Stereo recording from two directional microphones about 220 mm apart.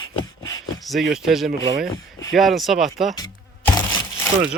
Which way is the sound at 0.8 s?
Centre (ahead or behind).